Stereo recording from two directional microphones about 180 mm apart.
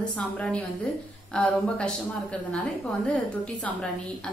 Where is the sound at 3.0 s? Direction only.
5° left (ahead or behind).